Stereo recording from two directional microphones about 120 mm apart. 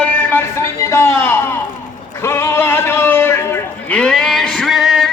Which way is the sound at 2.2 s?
20° left (ahead or behind).